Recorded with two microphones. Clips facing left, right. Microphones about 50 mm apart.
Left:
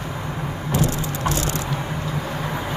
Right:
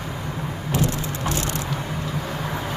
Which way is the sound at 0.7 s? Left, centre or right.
Left.